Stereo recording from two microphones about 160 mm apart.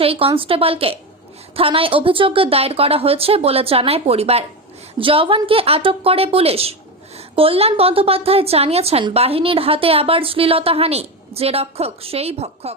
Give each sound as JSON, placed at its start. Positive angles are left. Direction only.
{"t": 0.0, "sound": "a woman's voice", "side_deg": -35}